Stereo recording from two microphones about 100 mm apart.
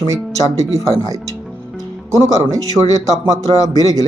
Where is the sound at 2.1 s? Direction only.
35° right (ahead or behind).